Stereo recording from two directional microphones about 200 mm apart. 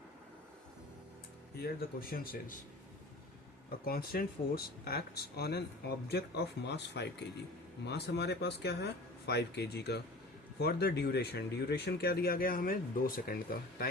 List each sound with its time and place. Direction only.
1.5 s speech: 50° left (ahead or behind)
3.7 s speech: 50° left (ahead or behind)